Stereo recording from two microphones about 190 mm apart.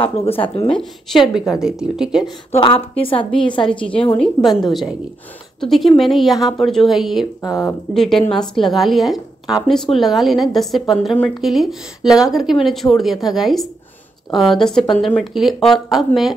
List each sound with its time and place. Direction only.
0.0 s speech: 30° left (ahead or behind)
1.1 s a woman's voice: centre (ahead or behind)
2.5 s speech: 25° left (ahead or behind)
3.6 s a woman's voice: 5° left (ahead or behind)
7.4 s a woman's voice: 20° left (ahead or behind)
7.9 s a woman's voice: centre (ahead or behind)